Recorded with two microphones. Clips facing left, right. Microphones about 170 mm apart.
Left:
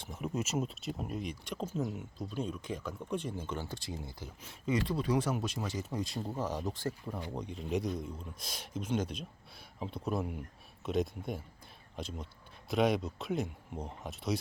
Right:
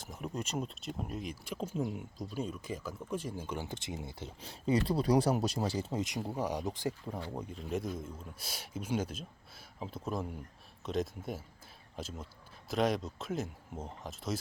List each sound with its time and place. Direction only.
0.0 s speech: centre (ahead or behind); by 6.9 s 15° right (ahead or behind)
7.3 s speech: 5° right (ahead or behind)